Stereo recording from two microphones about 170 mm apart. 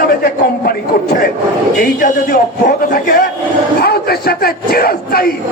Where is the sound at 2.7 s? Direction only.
60° left (ahead or behind).